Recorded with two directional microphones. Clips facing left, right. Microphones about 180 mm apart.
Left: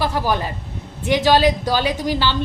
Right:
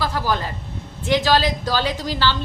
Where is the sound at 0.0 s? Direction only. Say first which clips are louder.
Left 2 dB; 15° left (ahead or behind).